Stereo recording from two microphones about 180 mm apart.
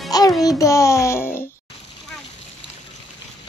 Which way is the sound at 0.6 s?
15° left (ahead or behind).